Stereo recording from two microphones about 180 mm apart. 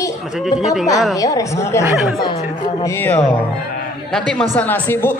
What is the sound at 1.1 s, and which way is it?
Speech, 20° left (ahead or behind).